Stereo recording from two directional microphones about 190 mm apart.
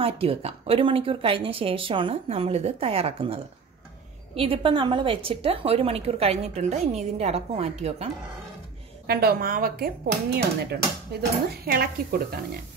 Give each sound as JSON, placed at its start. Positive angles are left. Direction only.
{"t": 0.0, "sound": "speech", "side_deg": -30}
{"t": 4.4, "sound": "a woman's voice", "side_deg": -25}
{"t": 9.0, "sound": "speech", "side_deg": -50}